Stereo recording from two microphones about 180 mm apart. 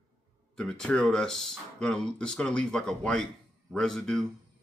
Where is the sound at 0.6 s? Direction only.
5° left (ahead or behind).